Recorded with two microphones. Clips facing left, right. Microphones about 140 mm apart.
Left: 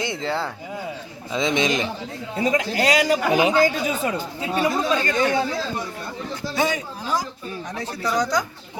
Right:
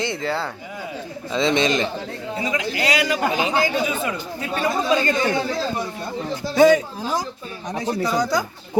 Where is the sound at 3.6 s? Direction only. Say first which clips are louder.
Left 1 dB; 40° left (ahead or behind).